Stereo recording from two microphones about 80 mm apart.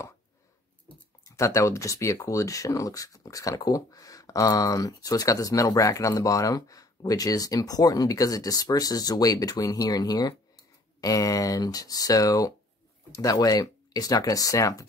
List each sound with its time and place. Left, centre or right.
1.2 s speech: left